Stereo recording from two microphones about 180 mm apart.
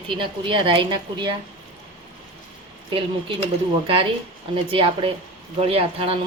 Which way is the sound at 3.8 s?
30° right (ahead or behind).